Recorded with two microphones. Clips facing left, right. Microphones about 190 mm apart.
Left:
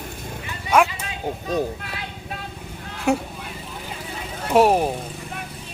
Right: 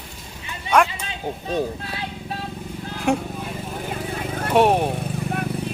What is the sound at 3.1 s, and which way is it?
Speech, centre (ahead or behind).